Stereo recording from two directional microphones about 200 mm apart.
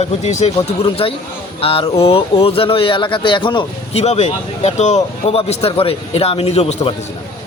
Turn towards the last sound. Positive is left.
turn(degrees=30)  # may be behind; listen again after turning